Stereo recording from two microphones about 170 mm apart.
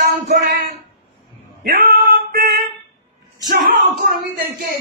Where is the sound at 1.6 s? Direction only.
60° right (ahead or behind).